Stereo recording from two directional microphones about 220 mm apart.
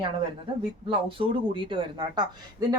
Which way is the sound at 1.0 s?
25° right (ahead or behind).